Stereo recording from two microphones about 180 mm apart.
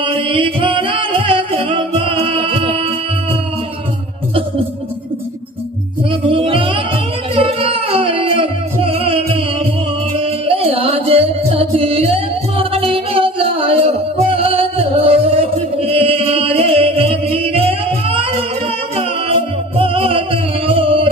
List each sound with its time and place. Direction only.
0.0 s singing: 30° right (ahead or behind)
6.1 s music: 30° right (ahead or behind)